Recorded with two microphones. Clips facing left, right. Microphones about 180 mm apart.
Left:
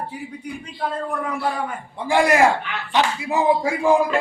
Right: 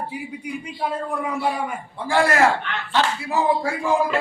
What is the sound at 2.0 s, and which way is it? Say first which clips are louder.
Speech: left 2 dB; 15° left (ahead or behind).